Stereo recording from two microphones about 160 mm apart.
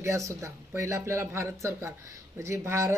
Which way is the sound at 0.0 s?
20° right (ahead or behind).